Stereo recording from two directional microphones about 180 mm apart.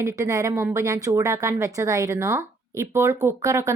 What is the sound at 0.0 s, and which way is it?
A woman's voice, 20° right (ahead or behind).